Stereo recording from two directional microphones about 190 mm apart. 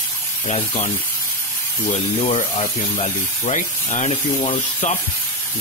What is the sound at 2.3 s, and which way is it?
Speech, 35° left (ahead or behind).